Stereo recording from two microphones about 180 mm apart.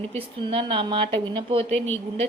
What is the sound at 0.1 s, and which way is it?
Speech, 30° right (ahead or behind).